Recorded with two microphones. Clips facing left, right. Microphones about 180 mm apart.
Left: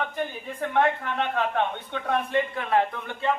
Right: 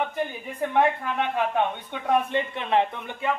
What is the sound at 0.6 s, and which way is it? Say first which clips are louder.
Speech: right 1 dB; 10° right (ahead or behind).